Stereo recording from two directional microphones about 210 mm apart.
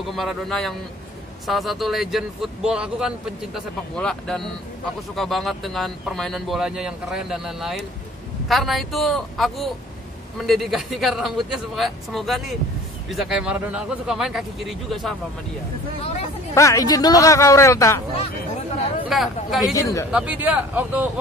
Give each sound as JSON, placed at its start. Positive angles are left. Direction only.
{"t": 0.1, "sound": "speech", "side_deg": 0}
{"t": 16.0, "sound": "hubbub", "side_deg": 30}
{"t": 16.5, "sound": "speech", "side_deg": 15}
{"t": 19.0, "sound": "speech", "side_deg": 0}
{"t": 19.7, "sound": "speech", "side_deg": 15}
{"t": 20.1, "sound": "speech", "side_deg": -5}